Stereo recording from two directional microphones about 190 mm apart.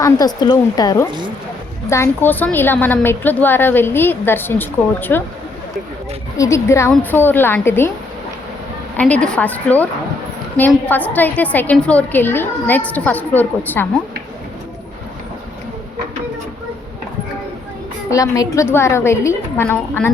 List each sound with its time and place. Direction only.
0.0 s a woman's voice: 20° left (ahead or behind)
6.3 s a woman's voice: 15° left (ahead or behind)
9.0 s a woman's voice: 5° left (ahead or behind)
18.1 s a woman's voice: 15° left (ahead or behind)